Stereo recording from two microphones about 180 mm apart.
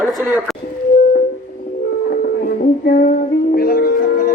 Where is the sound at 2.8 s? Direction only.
60° left (ahead or behind).